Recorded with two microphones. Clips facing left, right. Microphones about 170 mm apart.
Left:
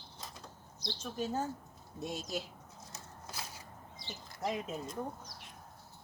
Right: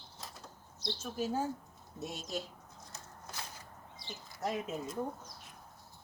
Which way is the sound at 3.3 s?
10° left (ahead or behind).